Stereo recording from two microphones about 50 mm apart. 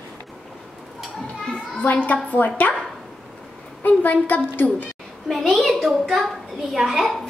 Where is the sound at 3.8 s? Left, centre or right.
Left.